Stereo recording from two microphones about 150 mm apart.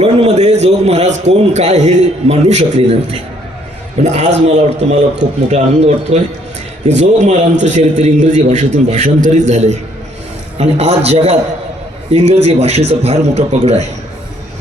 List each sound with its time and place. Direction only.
0.0 s a man's voice: 45° right (ahead or behind)